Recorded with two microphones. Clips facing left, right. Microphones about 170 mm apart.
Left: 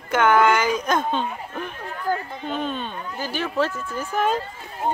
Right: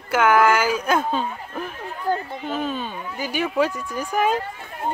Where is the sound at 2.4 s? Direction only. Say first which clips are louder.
Right 1 dB; 5° right (ahead or behind).